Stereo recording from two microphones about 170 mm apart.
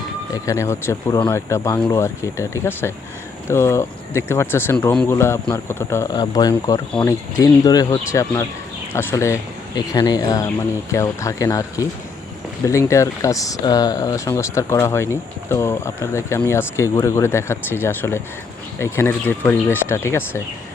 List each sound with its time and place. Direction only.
0.4 s speech: 15° left (ahead or behind)